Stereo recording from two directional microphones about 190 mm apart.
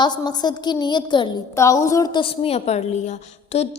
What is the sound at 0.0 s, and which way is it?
A woman's voice, 20° left (ahead or behind).